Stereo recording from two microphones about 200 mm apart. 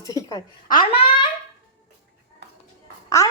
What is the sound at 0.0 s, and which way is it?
Speech, 15° left (ahead or behind).